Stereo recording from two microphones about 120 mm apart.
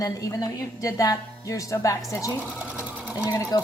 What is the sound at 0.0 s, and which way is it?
A woman's voice, 30° left (ahead or behind).